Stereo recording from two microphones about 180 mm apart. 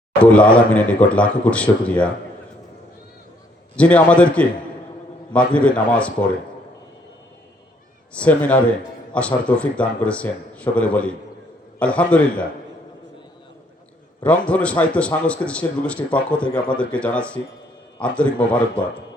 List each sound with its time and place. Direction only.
0.2 s speech: 5° left (ahead or behind)
3.8 s speech: 5° left (ahead or behind)
8.1 s speech: 5° left (ahead or behind)
14.3 s speech: 5° left (ahead or behind)